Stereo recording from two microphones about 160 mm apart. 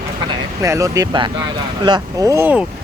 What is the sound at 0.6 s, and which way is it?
Speech, 20° right (ahead or behind).